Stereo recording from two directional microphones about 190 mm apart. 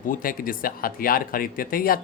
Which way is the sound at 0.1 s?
45° left (ahead or behind).